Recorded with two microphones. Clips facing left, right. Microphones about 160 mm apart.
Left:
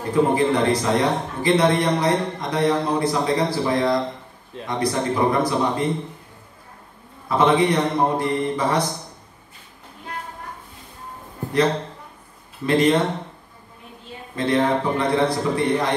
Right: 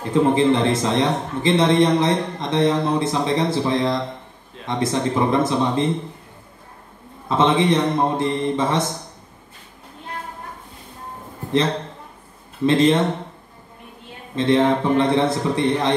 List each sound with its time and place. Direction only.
0.1 s a man's voice: 25° right (ahead or behind)
7.2 s a man's voice: 25° right (ahead or behind)
12.6 s a man's voice: 25° right (ahead or behind)
14.3 s a man's voice: 25° right (ahead or behind)